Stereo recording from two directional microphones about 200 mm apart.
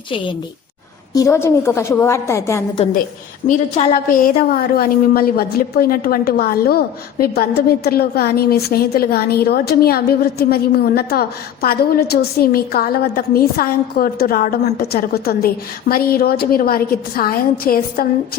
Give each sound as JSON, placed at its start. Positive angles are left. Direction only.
{"t": 1.1, "sound": "a woman's voice", "side_deg": 15}
{"t": 3.4, "sound": "a woman's voice", "side_deg": 35}